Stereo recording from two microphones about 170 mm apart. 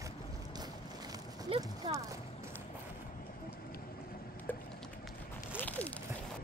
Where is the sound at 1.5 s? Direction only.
35° right (ahead or behind).